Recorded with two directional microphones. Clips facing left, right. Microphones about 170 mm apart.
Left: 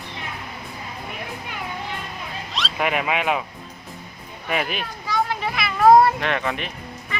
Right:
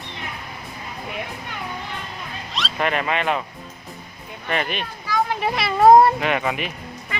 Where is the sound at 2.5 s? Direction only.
5° left (ahead or behind).